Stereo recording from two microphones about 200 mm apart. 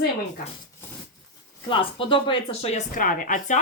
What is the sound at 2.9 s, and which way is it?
Speech, 45° left (ahead or behind).